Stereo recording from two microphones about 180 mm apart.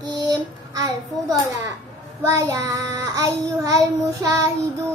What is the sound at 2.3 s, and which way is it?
Child singing, 15° right (ahead or behind).